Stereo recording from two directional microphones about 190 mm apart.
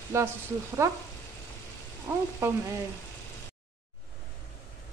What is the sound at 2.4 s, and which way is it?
Speech, 15° right (ahead or behind).